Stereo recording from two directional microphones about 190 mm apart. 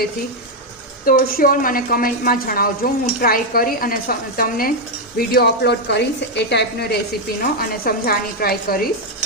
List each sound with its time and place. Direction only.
1.0 s a woman's voice: 50° left (ahead or behind)
7.9 s a woman's voice: 50° left (ahead or behind)